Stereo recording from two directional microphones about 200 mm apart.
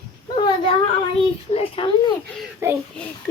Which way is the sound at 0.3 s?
25° left (ahead or behind).